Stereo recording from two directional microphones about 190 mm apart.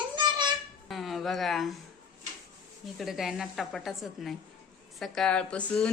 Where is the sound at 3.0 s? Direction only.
Centre (ahead or behind).